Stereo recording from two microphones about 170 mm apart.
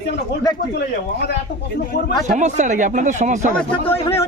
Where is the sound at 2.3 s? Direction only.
45° right (ahead or behind).